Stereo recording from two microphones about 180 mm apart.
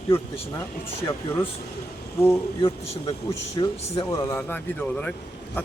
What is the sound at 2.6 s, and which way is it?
Speech, 35° left (ahead or behind).